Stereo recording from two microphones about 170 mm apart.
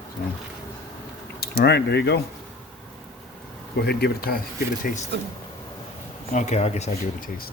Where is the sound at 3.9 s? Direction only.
70° left (ahead or behind).